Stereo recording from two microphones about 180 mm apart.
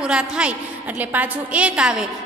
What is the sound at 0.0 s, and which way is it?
A woman's voice, 5° right (ahead or behind).